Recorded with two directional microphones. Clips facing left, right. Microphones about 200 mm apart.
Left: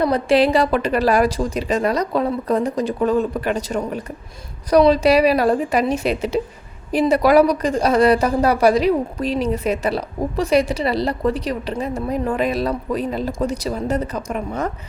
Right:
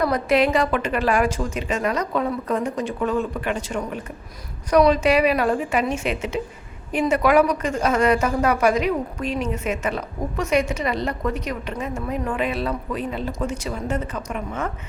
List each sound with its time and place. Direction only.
0.0 s a woman's voice: 30° left (ahead or behind)